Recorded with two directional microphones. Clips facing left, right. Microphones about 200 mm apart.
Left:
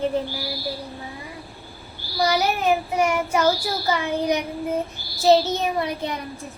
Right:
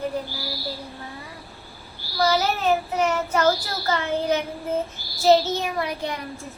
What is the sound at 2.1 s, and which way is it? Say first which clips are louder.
A child's voice: even; 15° left (ahead or behind).